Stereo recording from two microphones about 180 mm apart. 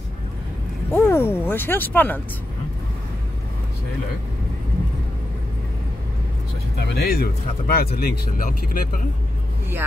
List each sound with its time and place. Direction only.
0.9 s speech: 15° left (ahead or behind)
6.8 s speech: 60° left (ahead or behind)